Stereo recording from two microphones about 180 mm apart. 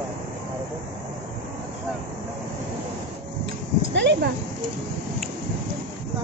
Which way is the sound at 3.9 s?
75° right (ahead or behind).